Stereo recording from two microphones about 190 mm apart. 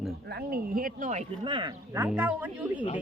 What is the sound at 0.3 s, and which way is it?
Speech, 55° right (ahead or behind).